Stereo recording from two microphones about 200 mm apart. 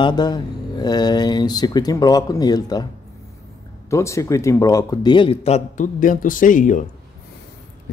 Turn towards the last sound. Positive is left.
turn(degrees=40)  # may be behind; listen again after turning